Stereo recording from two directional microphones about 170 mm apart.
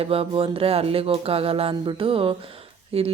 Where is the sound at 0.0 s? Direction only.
35° right (ahead or behind).